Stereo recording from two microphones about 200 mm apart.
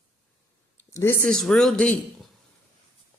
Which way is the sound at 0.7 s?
15° left (ahead or behind).